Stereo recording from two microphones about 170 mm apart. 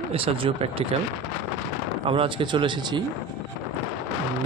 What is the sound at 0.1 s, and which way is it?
Speech, 35° right (ahead or behind).